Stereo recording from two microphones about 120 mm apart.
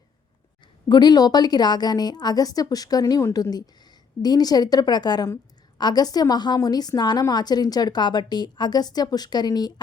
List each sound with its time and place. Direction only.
0.9 s a woman's voice: 35° left (ahead or behind)